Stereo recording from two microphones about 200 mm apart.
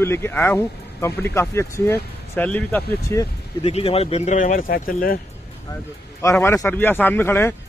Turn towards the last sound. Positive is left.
turn(degrees=10)  # may be behind; listen again after turning